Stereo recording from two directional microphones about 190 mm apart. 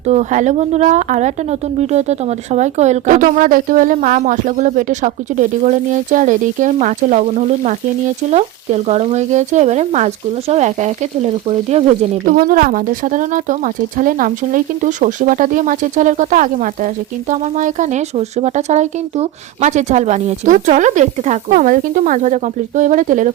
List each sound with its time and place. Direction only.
0.1 s speech: 40° right (ahead or behind)
12.2 s speech: 45° right (ahead or behind)